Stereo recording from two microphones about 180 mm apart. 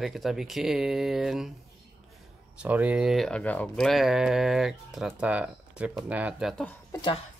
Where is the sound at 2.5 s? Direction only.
10° right (ahead or behind).